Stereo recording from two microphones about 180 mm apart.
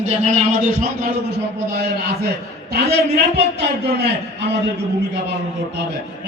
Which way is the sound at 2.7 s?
65° right (ahead or behind).